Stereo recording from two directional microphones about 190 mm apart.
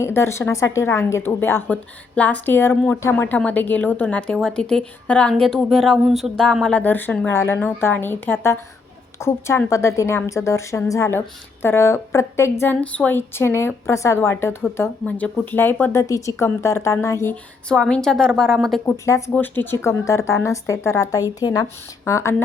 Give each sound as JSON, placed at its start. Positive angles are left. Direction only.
{"t": 0.0, "sound": "a woman's voice", "side_deg": 15}
{"t": 19.0, "sound": "speech", "side_deg": 15}